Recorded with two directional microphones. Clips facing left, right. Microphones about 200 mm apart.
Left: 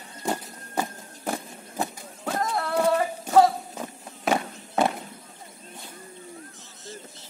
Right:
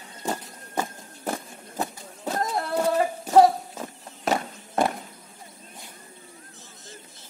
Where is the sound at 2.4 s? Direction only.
20° right (ahead or behind).